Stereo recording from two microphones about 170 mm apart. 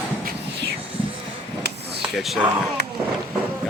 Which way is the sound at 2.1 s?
Centre (ahead or behind).